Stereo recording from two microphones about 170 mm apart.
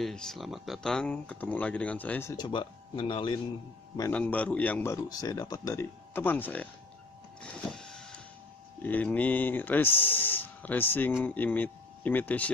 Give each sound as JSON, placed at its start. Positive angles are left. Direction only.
{"t": 0.0, "sound": "speech", "side_deg": 5}
{"t": 2.3, "sound": "speech", "side_deg": 25}
{"t": 4.1, "sound": "speech", "side_deg": 10}
{"t": 7.7, "sound": "vehicle", "side_deg": 5}
{"t": 8.8, "sound": "speech", "side_deg": 10}